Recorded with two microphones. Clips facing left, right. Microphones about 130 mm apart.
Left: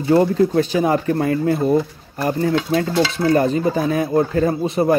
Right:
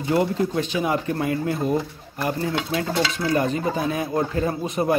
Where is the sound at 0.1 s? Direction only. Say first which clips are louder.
Left 7 dB; 35° left (ahead or behind).